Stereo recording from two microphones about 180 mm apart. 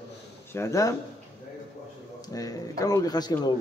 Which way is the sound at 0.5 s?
15° left (ahead or behind).